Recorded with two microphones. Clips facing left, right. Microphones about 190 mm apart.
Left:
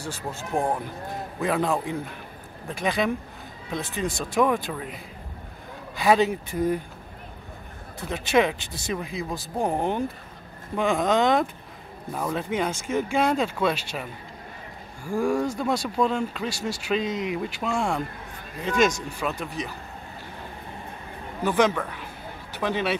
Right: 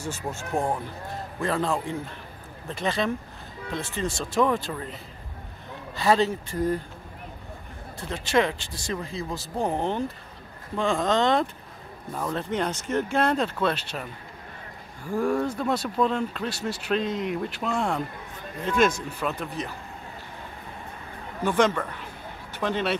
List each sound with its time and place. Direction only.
0.0 s speech: 15° left (ahead or behind)
8.1 s speech: 15° left (ahead or behind)
15.4 s speech: 10° left (ahead or behind)
18.6 s a woman's voice: 5° right (ahead or behind)
19.1 s speech: 5° left (ahead or behind)
21.5 s a woman's voice: 5° left (ahead or behind)